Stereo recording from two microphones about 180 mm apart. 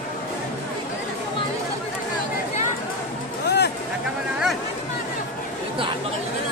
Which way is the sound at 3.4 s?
65° left (ahead or behind).